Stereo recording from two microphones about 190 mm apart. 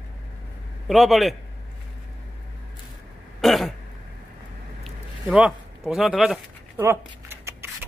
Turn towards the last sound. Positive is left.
turn(degrees=-10)  # may be behind; listen again after turning